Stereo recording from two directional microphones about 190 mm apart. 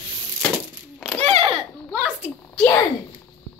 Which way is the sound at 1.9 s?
10° right (ahead or behind).